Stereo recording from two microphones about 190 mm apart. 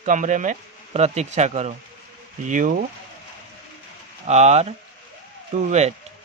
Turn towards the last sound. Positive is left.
turn(degrees=-35)  # may be behind; listen again after turning